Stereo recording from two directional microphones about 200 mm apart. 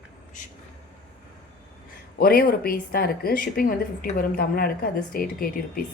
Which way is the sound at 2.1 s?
50° left (ahead or behind).